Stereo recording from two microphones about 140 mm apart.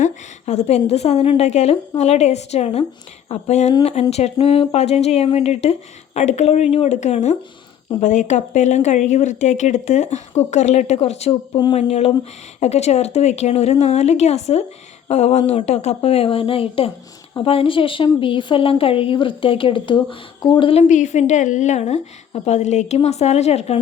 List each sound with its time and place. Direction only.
0.0 s a woman's voice: 55° left (ahead or behind)
11.5 s a woman's voice: 35° left (ahead or behind)
11.8 s a woman's voice: 45° left (ahead or behind)
20.8 s speech: 60° left (ahead or behind)